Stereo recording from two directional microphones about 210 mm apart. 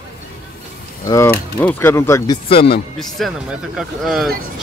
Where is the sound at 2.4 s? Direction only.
25° left (ahead or behind).